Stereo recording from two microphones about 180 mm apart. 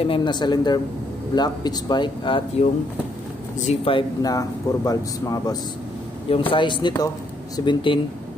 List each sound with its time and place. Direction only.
0.0 s speech: 25° left (ahead or behind)
3.5 s speech: 40° left (ahead or behind)
3.9 s speech: 20° left (ahead or behind)